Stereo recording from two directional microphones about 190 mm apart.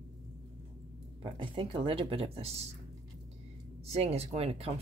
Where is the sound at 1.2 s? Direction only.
25° right (ahead or behind).